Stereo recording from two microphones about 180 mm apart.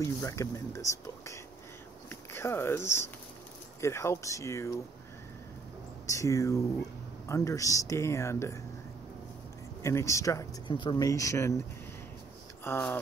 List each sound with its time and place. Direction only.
0.0 s speech: 15° left (ahead or behind)
6.0 s speech: 15° left (ahead or behind)
9.8 s speech: 15° left (ahead or behind)
12.6 s speech: 10° left (ahead or behind)